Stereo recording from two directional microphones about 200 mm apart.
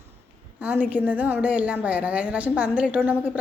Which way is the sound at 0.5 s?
5° right (ahead or behind).